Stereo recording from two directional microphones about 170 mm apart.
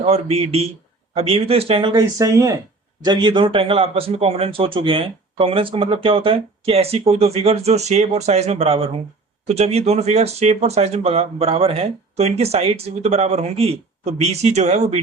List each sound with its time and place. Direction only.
0.0 s a man's voice: 35° right (ahead or behind)